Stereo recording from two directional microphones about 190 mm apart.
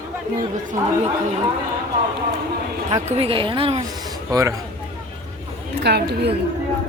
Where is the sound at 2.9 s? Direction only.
30° right (ahead or behind).